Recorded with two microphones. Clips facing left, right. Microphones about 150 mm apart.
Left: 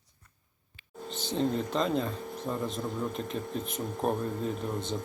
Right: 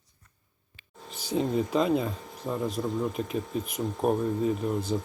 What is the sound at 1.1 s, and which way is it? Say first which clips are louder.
Speech: right 2 dB; 5° right (ahead or behind).